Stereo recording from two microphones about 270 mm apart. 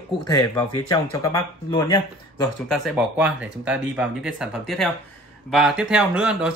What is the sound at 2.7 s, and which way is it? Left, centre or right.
Speech, centre.